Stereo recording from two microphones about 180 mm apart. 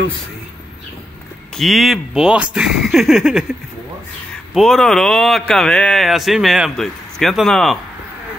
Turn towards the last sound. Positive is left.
turn(degrees=0)  # may be behind; listen again after turning